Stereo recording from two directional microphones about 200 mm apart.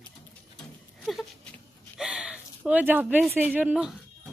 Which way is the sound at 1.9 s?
5° right (ahead or behind).